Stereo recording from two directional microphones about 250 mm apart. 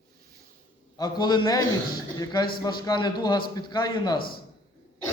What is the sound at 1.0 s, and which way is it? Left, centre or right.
A man's voice, centre.